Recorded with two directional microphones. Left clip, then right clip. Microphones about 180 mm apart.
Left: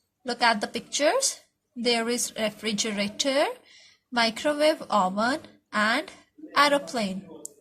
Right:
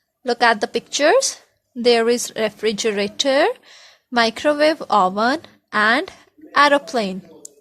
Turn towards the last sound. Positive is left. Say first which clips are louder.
# right 7 dB
turn(degrees=-45)  # may be behind; listen again after turning